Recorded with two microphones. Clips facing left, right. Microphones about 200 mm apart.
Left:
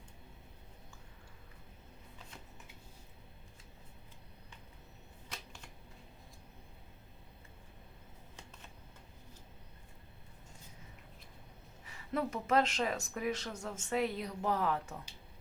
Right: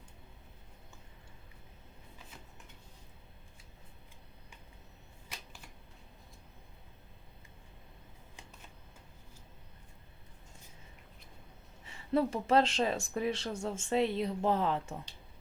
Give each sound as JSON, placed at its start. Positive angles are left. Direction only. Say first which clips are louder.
{"t": 11.9, "sound": "speech", "louder": "right 6 dB", "side_deg": -30}